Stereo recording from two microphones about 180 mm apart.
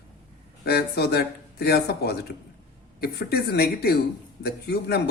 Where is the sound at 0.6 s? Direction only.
60° left (ahead or behind).